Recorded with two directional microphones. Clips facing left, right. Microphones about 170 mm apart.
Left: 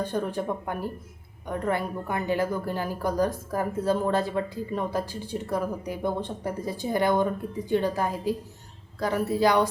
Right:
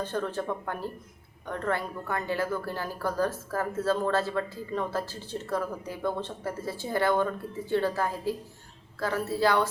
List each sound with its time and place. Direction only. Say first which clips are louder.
0.0 s a woman's voice: left 3 dB; 15° left (ahead or behind)